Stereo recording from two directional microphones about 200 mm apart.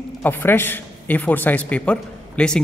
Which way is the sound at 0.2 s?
10° left (ahead or behind).